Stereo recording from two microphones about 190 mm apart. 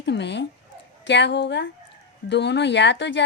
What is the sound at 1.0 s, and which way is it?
A woman's voice, 65° left (ahead or behind).